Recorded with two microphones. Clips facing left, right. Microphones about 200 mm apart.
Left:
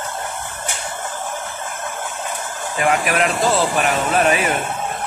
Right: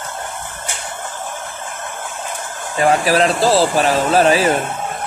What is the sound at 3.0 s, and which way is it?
Speech, 30° right (ahead or behind).